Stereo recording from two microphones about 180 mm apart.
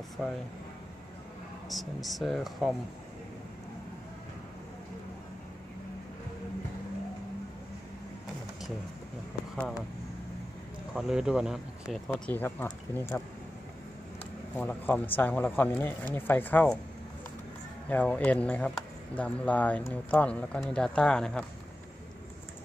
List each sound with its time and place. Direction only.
0.2 s speech: 5° right (ahead or behind)
1.7 s speech: centre (ahead or behind)
11.0 s speech: 5° right (ahead or behind)
12.3 s speech: 10° left (ahead or behind)
14.5 s speech: 10° left (ahead or behind)
17.8 s speech: 10° left (ahead or behind)